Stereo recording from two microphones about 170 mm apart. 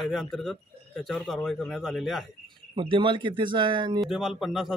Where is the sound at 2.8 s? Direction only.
30° right (ahead or behind).